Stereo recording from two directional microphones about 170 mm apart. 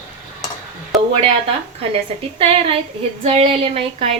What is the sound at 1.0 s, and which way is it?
A woman's voice, 35° right (ahead or behind).